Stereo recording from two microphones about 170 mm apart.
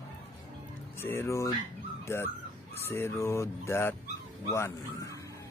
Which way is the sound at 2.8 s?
15° left (ahead or behind).